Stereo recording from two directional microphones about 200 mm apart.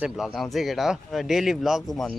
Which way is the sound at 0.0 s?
Centre (ahead or behind).